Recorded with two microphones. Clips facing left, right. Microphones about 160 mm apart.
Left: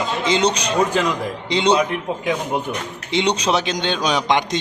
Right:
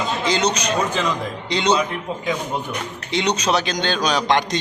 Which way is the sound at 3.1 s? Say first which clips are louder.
Left 1 dB; 20° left (ahead or behind).